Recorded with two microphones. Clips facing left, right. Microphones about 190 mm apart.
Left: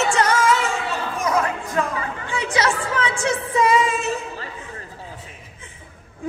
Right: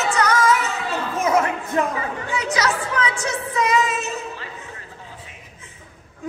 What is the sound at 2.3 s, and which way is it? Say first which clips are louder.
Music: left 1 dB; 30° left (ahead or behind).